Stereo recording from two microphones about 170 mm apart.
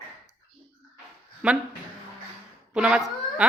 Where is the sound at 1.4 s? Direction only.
5° right (ahead or behind).